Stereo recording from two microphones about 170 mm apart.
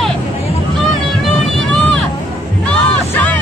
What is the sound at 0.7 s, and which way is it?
Vehicle, centre (ahead or behind).